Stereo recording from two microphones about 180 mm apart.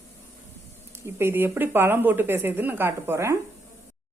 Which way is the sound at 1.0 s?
15° right (ahead or behind).